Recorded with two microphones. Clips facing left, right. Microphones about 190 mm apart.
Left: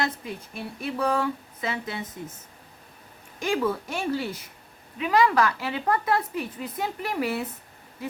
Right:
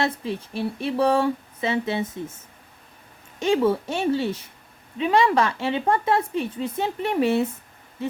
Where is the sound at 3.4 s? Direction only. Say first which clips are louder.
Right 5 dB; 25° right (ahead or behind).